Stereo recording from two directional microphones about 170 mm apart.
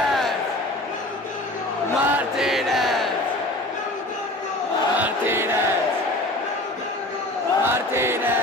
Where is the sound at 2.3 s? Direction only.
Centre (ahead or behind).